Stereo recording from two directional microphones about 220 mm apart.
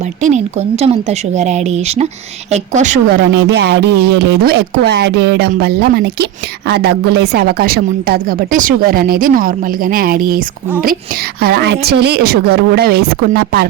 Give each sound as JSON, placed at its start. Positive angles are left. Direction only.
{"t": 0.2, "sound": "speech", "side_deg": -30}
{"t": 3.2, "sound": "speech", "side_deg": -50}